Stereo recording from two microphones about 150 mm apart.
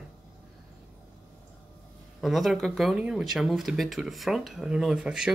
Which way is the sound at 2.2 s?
Centre (ahead or behind).